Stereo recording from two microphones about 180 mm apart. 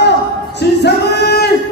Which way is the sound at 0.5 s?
70° left (ahead or behind).